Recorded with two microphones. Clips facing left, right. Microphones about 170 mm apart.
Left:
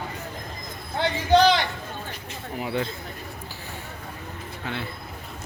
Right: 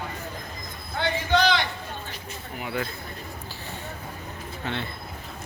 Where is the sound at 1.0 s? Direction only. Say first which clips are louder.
Left 4 dB; 35° left (ahead or behind).